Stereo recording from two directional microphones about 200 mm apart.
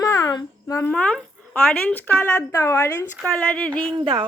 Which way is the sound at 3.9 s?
25° right (ahead or behind).